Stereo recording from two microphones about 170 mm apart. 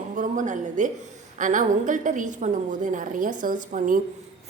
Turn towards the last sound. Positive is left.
turn(degrees=-50)  # may be behind; listen again after turning